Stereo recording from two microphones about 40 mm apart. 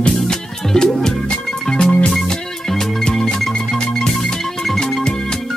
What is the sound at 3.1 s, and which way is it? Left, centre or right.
Music, centre.